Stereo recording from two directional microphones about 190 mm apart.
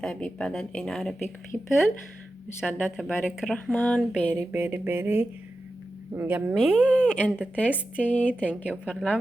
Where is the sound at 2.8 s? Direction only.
5° right (ahead or behind).